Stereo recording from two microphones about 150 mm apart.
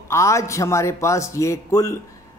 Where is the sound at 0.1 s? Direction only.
20° left (ahead or behind).